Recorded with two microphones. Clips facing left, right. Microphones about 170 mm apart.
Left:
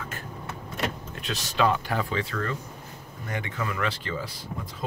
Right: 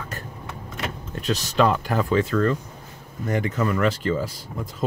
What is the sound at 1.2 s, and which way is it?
Speech, 40° right (ahead or behind).